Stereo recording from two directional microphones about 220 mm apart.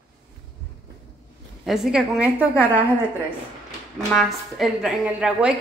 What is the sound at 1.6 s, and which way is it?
Speech, centre (ahead or behind).